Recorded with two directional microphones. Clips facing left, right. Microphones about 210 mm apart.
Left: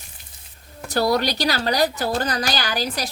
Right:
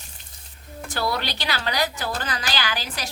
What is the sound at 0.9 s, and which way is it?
A woman's voice, 40° left (ahead or behind).